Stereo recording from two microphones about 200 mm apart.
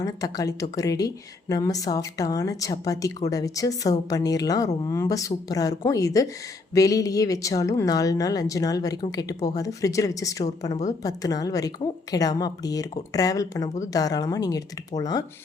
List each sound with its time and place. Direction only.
0.0 s speech: 15° left (ahead or behind)